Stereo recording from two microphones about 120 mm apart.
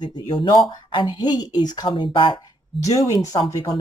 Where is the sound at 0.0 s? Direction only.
40° left (ahead or behind).